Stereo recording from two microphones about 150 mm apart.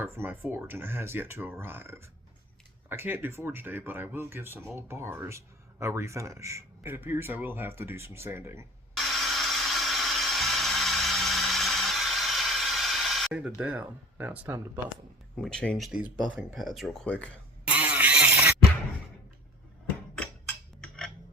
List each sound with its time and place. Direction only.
0.0 s speech: 15° right (ahead or behind)
9.0 s a sound: centre (ahead or behind)
13.6 s speech: 10° right (ahead or behind)
15.4 s speech: 5° left (ahead or behind)
15.9 s speech: 10° right (ahead or behind)
17.7 s vehicle: 10° right (ahead or behind)
20.8 s a sound: 5° left (ahead or behind)